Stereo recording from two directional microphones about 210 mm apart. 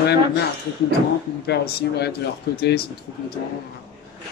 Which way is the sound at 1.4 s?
50° left (ahead or behind).